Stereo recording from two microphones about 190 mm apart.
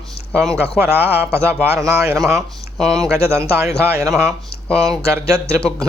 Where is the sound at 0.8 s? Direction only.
10° right (ahead or behind).